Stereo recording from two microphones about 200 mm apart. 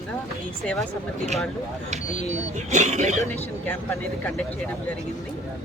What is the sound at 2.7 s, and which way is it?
Speech, 35° right (ahead or behind).